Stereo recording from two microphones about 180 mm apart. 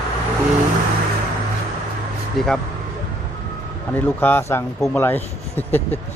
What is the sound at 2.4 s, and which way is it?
Speech, centre (ahead or behind).